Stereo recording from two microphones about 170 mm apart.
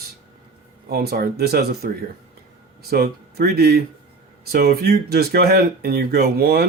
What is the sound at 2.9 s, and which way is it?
Speech, 65° right (ahead or behind).